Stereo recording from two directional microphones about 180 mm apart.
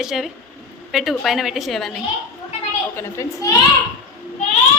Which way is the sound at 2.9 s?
15° left (ahead or behind).